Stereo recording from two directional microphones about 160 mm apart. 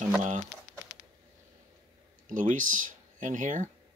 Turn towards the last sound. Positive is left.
turn(degrees=-50)  # may be behind; listen again after turning